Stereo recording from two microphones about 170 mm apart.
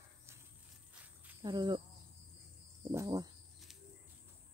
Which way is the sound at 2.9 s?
20° right (ahead or behind).